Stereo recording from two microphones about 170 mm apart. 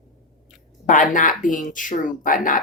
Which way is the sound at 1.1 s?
50° left (ahead or behind).